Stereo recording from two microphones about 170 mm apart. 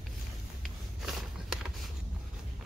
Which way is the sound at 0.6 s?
Centre (ahead or behind).